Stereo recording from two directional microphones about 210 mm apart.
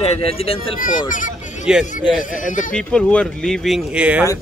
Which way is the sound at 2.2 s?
40° left (ahead or behind).